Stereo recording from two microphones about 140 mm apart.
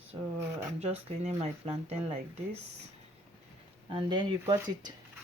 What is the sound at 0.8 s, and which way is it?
Speech, 55° right (ahead or behind).